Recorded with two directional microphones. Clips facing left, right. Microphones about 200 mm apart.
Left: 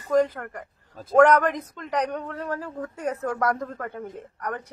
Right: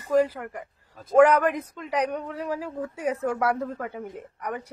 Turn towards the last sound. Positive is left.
turn(degrees=-10)  # may be behind; listen again after turning